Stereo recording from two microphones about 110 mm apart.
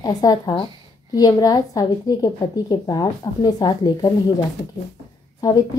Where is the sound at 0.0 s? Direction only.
35° left (ahead or behind).